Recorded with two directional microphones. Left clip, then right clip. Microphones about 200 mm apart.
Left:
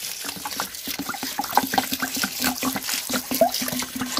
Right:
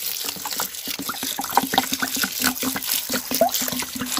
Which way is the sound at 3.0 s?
5° right (ahead or behind).